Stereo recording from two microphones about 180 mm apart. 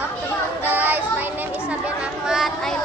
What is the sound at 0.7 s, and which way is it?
Child singing, 10° right (ahead or behind).